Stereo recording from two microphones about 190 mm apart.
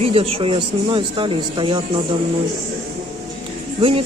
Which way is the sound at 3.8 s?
30° right (ahead or behind).